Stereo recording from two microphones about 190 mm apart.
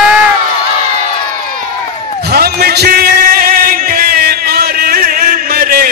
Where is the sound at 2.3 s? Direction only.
55° right (ahead or behind).